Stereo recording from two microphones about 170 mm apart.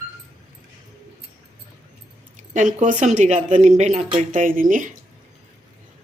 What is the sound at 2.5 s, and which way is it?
Speech, 50° right (ahead or behind).